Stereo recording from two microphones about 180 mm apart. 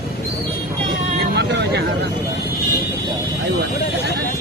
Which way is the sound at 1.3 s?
70° right (ahead or behind).